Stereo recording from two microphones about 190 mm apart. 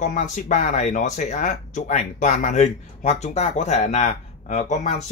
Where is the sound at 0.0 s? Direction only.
40° left (ahead or behind).